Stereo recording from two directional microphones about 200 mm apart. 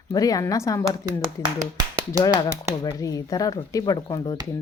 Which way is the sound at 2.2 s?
20° left (ahead or behind).